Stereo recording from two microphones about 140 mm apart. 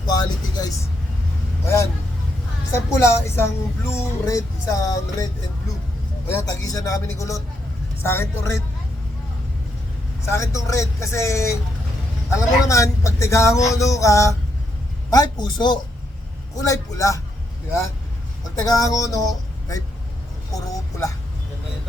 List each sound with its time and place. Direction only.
0.0 s speech: 30° left (ahead or behind)
6.3 s a woman's voice: 25° left (ahead or behind)
10.2 s a man's voice: 20° left (ahead or behind)
18.6 s speech: 25° left (ahead or behind)
20.5 s vehicle: 25° left (ahead or behind)